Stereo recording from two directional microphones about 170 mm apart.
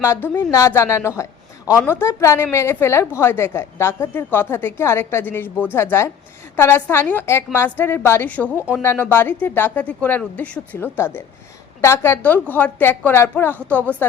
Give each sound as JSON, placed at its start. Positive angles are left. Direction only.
{"t": 0.0, "sound": "a woman's voice", "side_deg": 15}